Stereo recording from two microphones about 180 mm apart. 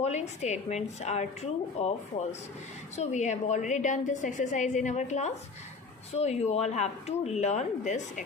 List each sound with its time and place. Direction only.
0.0 s speech: 40° left (ahead or behind)
2.9 s a woman's voice: 40° left (ahead or behind)